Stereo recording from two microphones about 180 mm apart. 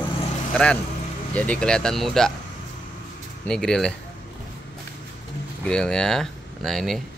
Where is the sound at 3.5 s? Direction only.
5° left (ahead or behind).